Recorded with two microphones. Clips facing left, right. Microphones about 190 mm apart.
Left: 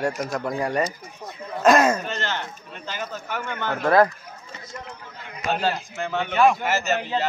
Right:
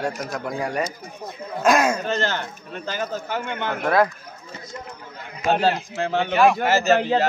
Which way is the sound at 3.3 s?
20° right (ahead or behind).